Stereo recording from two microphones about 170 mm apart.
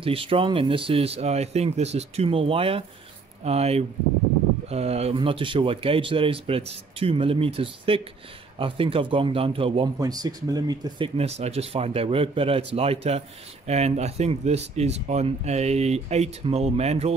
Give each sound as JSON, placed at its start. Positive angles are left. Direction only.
{"t": 0.0, "sound": "speech", "side_deg": -35}
{"t": 9.9, "sound": "speech", "side_deg": -20}
{"t": 11.1, "sound": "speech", "side_deg": -40}